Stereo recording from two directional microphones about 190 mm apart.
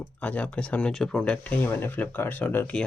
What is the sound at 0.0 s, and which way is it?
Speech, 10° left (ahead or behind).